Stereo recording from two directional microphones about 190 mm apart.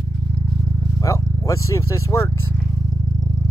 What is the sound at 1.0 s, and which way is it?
Vehicle, 15° left (ahead or behind).